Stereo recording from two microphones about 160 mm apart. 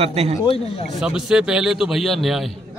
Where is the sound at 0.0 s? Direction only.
40° right (ahead or behind).